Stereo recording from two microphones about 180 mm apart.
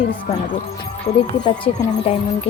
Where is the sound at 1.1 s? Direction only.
35° left (ahead or behind).